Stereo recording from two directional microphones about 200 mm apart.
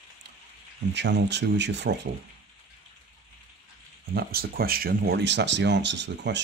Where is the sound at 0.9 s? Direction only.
60° right (ahead or behind).